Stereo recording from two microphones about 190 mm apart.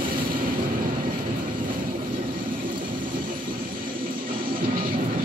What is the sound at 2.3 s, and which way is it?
Vehicle, 45° right (ahead or behind).